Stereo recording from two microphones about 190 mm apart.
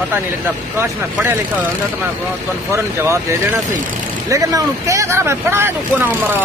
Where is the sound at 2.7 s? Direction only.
15° right (ahead or behind).